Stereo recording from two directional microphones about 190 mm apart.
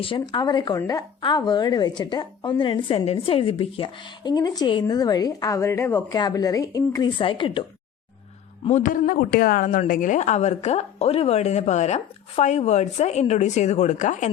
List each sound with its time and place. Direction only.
0.0 s a woman's voice: 25° left (ahead or behind)
8.6 s a woman's voice: 40° left (ahead or behind)